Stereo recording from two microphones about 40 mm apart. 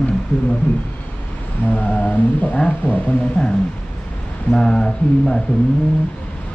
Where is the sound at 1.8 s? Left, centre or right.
Left.